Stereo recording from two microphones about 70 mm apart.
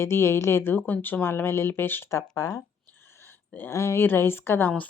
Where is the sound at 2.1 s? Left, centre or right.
Left.